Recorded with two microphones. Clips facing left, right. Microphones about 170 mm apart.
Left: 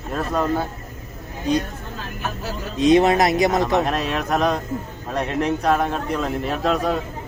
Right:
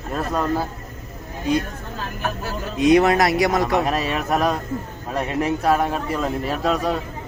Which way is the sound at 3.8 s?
5° right (ahead or behind).